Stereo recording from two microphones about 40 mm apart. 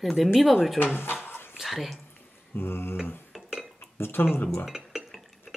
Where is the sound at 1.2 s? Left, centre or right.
Left.